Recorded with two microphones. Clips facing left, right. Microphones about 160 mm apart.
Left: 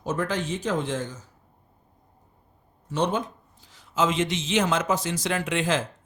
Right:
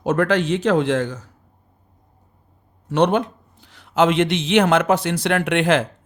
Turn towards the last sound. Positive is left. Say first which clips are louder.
# right 7 dB
turn(degrees=-65)  # may be behind; listen again after turning